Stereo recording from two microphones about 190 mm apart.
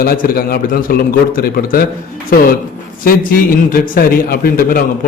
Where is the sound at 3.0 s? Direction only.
50° left (ahead or behind).